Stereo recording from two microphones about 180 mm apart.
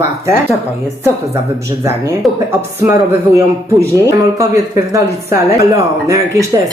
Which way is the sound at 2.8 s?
15° right (ahead or behind).